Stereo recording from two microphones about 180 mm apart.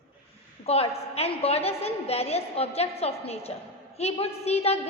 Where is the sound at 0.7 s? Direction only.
35° left (ahead or behind).